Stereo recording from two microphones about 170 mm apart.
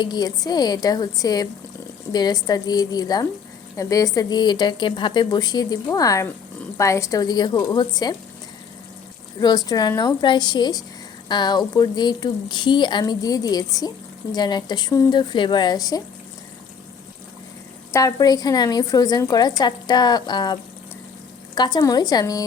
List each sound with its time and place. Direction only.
0.0 s speech: 25° left (ahead or behind)
9.6 s speech: 20° left (ahead or behind)
17.9 s speech: 20° left (ahead or behind)